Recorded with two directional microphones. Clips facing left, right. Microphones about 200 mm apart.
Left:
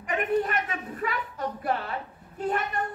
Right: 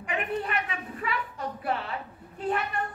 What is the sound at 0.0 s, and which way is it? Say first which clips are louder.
A woman's voice: left 5 dB; 45° left (ahead or behind).